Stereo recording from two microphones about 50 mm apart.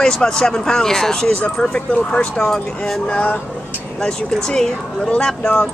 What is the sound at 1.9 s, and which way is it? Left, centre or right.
Speech, left.